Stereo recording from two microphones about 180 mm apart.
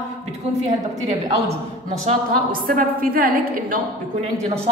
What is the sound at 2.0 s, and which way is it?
A woman's voice, 50° right (ahead or behind).